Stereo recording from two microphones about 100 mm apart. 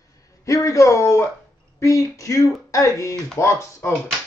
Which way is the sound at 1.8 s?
30° left (ahead or behind).